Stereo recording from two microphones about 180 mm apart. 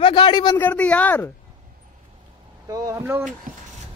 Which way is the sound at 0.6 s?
10° left (ahead or behind).